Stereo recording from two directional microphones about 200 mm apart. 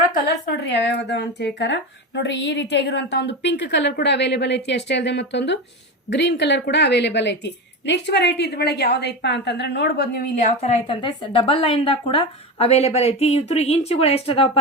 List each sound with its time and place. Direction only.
0.1 s speech: 50° left (ahead or behind)
10.3 s a woman's voice: 35° left (ahead or behind)